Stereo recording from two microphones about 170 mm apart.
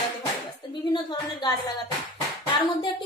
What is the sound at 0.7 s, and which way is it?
A woman's voice, 25° left (ahead or behind).